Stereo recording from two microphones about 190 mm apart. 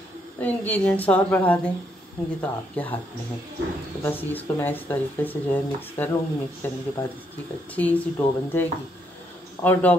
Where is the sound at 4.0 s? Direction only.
10° left (ahead or behind).